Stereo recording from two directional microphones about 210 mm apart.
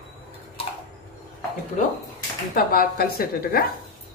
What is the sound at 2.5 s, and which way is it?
A woman's voice, 45° left (ahead or behind).